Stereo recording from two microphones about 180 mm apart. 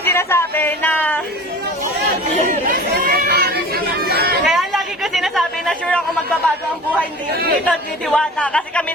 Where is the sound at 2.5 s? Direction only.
55° right (ahead or behind).